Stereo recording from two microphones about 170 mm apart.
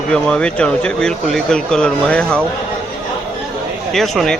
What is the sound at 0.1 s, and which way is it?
Speech, 5° left (ahead or behind).